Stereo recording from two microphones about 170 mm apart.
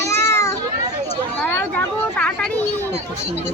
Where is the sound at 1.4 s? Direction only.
10° left (ahead or behind).